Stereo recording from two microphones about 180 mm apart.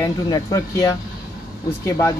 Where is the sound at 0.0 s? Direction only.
20° left (ahead or behind).